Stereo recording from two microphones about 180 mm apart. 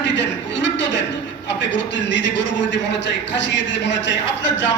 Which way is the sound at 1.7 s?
85° left.